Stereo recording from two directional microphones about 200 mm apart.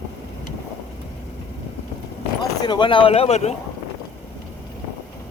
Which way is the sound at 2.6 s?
25° left (ahead or behind).